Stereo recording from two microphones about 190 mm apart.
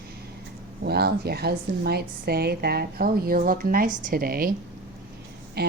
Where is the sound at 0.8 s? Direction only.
55° right (ahead or behind).